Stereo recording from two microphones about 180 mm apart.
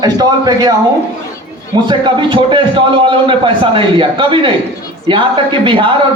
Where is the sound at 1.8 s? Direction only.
25° right (ahead or behind).